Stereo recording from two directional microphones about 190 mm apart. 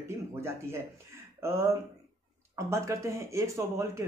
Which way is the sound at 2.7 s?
15° right (ahead or behind).